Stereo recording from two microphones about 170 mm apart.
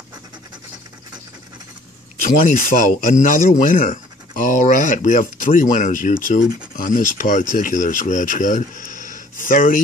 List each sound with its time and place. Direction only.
2.2 s speech: 50° left (ahead or behind)